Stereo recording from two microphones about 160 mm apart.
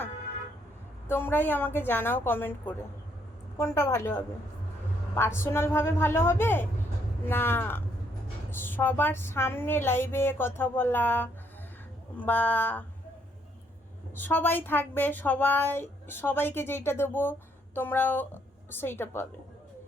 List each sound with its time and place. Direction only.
1.0 s speech: 15° left (ahead or behind)
14.2 s speech: 10° left (ahead or behind)